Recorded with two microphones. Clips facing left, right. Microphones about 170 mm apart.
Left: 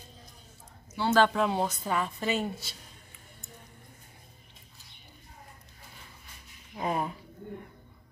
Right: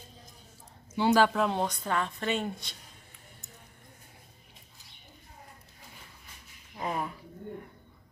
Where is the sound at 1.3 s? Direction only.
Centre (ahead or behind).